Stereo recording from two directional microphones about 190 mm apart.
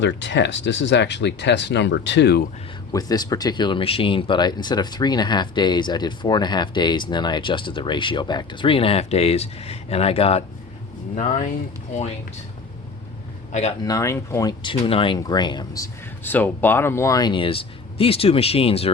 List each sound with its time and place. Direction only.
0.0 s speech: 70° left (ahead or behind)
2.9 s speech: 20° left (ahead or behind); by 11.4 s 40° left (ahead or behind)
13.5 s speech: 35° left (ahead or behind)
13.8 s speech: 15° left (ahead or behind)